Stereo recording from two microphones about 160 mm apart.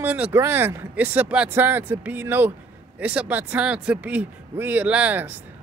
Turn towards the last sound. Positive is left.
turn(degrees=-10)  # may be behind; listen again after turning